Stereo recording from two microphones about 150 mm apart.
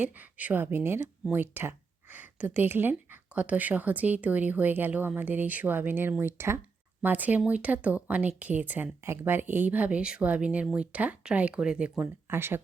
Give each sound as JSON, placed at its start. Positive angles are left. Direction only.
{"t": 0.0, "sound": "speech", "side_deg": -10}